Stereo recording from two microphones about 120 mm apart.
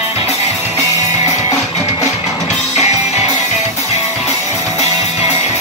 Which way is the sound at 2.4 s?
75° left (ahead or behind).